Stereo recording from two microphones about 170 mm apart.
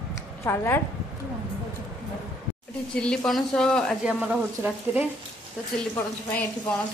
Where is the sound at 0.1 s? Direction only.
15° left (ahead or behind).